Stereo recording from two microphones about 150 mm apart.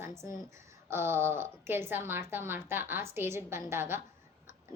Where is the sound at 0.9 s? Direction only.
15° right (ahead or behind).